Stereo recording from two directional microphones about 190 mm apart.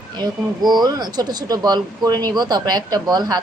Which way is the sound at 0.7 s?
20° right (ahead or behind).